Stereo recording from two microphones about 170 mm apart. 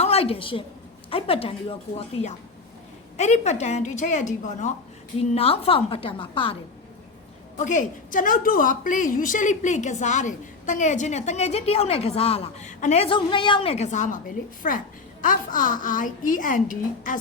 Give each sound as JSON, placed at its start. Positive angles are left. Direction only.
{"t": 0.0, "sound": "a woman's voice", "side_deg": 35}
{"t": 7.6, "sound": "a woman's voice", "side_deg": 45}